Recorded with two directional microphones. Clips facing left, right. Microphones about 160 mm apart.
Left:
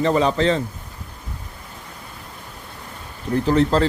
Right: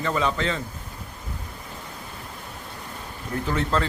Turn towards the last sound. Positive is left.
turn(degrees=35)  # may be behind; listen again after turning